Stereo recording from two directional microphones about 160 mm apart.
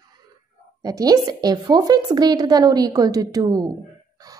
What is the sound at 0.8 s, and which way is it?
A woman's voice, 25° right (ahead or behind).